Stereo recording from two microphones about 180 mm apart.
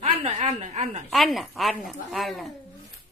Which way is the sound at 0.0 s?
35° right (ahead or behind).